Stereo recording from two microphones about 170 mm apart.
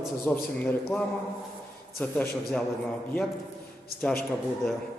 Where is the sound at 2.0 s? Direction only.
5° left (ahead or behind).